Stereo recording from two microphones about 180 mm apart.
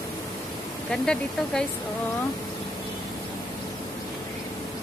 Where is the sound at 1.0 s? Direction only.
5° left (ahead or behind).